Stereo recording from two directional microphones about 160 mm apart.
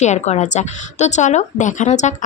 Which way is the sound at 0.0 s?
45° left (ahead or behind).